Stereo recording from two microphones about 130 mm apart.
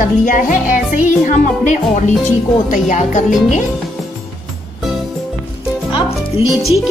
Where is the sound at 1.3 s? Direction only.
65° left (ahead or behind).